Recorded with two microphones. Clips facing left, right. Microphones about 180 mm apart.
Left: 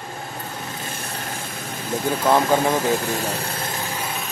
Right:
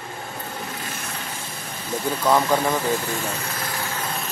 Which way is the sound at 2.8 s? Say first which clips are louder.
Left 3 dB; 40° left (ahead or behind).